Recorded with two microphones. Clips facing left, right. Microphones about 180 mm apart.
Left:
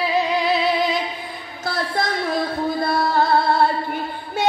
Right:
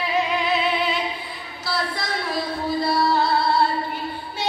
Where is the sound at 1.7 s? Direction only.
50° left (ahead or behind).